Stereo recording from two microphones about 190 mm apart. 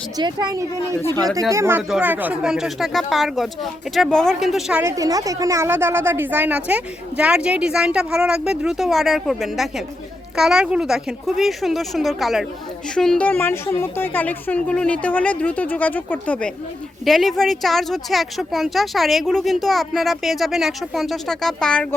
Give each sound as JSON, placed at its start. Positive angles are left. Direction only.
{"t": 0.2, "sound": "a woman's voice", "side_deg": -20}
{"t": 4.8, "sound": "a woman's voice", "side_deg": -15}